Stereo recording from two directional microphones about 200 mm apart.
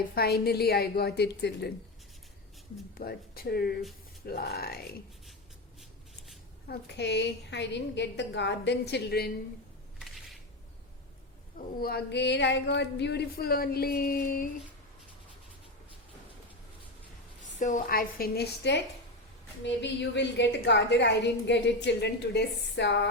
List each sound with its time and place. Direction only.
0.1 s speech: 50° left (ahead or behind)
3.0 s speech: 50° left (ahead or behind)
6.7 s a woman's voice: 55° left (ahead or behind)
11.5 s speech: 50° left (ahead or behind)
17.4 s a woman's voice: 40° left (ahead or behind); by 23.0 s 60° left (ahead or behind)